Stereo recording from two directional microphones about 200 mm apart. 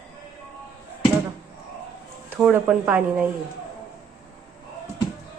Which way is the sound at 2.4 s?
5° right (ahead or behind).